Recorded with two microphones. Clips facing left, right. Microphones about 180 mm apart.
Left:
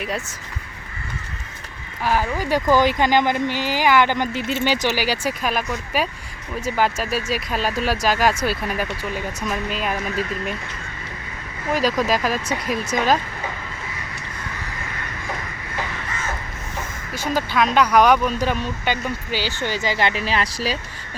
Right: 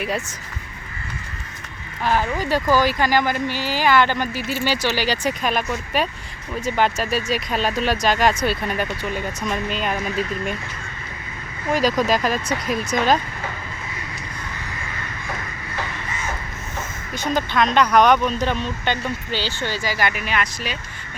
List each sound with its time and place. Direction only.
2.0 s speech: 5° left (ahead or behind)
11.7 s speech: centre (ahead or behind)
17.2 s speech: 5° left (ahead or behind); by 20.7 s 35° left (ahead or behind)